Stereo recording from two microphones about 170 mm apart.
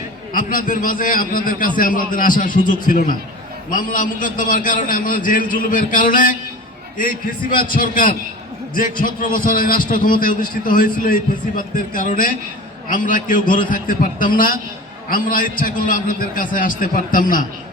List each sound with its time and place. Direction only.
0.3 s a man's voice: 50° left (ahead or behind)
7.7 s a man's voice: 55° left (ahead or behind)